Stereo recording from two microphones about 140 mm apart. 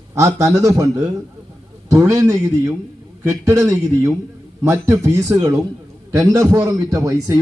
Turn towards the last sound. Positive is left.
turn(degrees=-25)  # may be behind; listen again after turning